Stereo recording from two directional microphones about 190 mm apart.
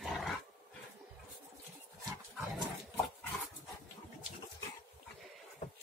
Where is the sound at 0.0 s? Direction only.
Centre (ahead or behind).